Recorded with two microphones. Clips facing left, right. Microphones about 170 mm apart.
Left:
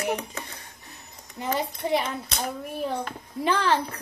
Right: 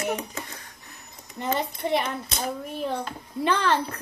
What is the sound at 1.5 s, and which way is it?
Speech, 10° left (ahead or behind).